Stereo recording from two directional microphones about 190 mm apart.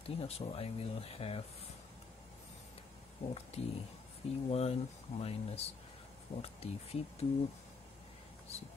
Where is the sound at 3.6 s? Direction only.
30° left (ahead or behind).